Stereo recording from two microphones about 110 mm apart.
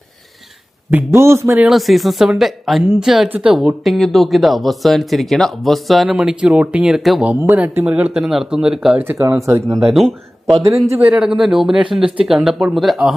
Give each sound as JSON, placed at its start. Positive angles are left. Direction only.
{"t": 0.9, "sound": "speech", "side_deg": -20}
{"t": 1.6, "sound": "speech", "side_deg": 0}
{"t": 3.8, "sound": "speech", "side_deg": 0}
{"t": 7.3, "sound": "speech", "side_deg": -15}
{"t": 9.0, "sound": "speech", "side_deg": -25}
{"t": 9.8, "sound": "speech", "side_deg": 0}
{"t": 10.8, "sound": "speech", "side_deg": -25}
{"t": 11.2, "sound": "speech", "side_deg": -5}